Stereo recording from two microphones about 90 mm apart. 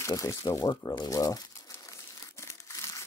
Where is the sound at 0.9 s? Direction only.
45° left (ahead or behind).